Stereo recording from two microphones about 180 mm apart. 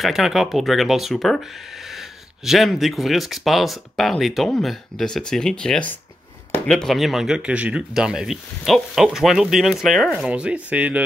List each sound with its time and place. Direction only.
0.0 s speech: centre (ahead or behind)